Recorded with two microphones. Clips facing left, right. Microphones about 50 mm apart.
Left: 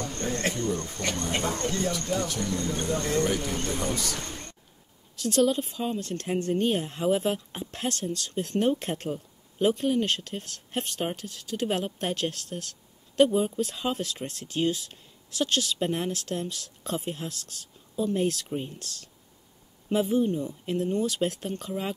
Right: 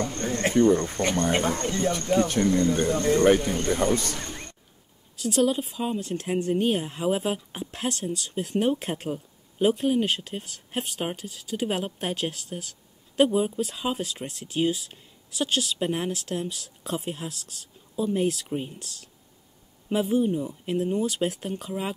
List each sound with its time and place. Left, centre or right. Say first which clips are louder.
0.2 s cricket: even; centre
0.6 s speech: right 10 dB; right
1.6 s speech: right 2 dB; centre
1.9 s speech: right 5 dB; right
3.3 s speech: right 5 dB; right
5.1 s speech: even; centre